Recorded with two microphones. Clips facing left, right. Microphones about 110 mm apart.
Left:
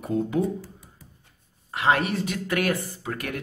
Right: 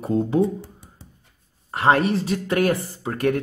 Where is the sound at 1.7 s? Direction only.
35° right (ahead or behind).